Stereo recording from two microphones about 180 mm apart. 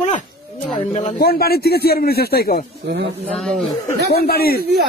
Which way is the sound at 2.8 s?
65° right (ahead or behind).